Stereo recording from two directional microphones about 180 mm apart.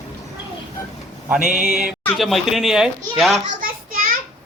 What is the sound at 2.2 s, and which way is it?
Speech, centre (ahead or behind).